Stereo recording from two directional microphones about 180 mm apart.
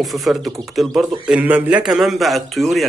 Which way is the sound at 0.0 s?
Centre (ahead or behind).